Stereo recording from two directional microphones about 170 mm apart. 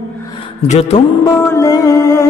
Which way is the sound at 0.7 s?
40° left (ahead or behind).